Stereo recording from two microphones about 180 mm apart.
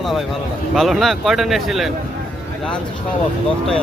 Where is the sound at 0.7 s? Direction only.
Centre (ahead or behind).